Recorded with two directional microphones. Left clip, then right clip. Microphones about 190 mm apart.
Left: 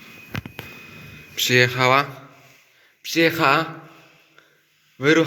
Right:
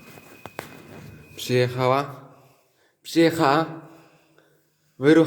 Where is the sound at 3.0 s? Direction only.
25° right (ahead or behind).